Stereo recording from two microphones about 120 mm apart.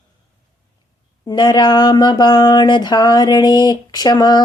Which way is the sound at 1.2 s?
35° left (ahead or behind).